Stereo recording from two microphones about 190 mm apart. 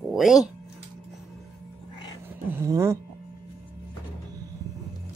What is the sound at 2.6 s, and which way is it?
Speech, 15° right (ahead or behind).